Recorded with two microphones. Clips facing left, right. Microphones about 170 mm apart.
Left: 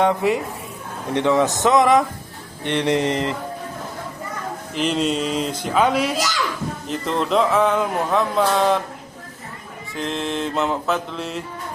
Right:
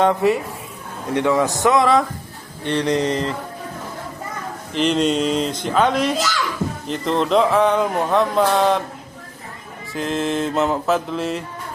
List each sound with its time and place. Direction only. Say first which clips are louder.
0.0 s speech: right 2 dB; 15° left (ahead or behind)
4.7 s speech: right 3 dB; 5° left (ahead or behind)
9.9 s speech: right 3 dB; centre (ahead or behind)